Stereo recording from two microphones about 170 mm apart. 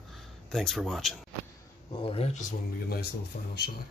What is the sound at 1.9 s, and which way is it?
Speech, 30° left (ahead or behind).